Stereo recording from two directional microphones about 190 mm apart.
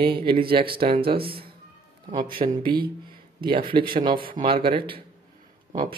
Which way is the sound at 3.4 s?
25° right (ahead or behind).